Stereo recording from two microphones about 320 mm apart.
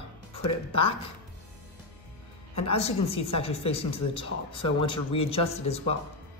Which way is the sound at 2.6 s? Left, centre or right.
Centre.